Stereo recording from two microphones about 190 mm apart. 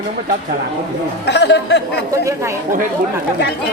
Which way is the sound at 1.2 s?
65° left (ahead or behind).